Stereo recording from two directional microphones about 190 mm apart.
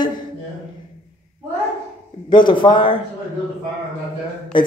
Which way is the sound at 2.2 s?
25° left (ahead or behind).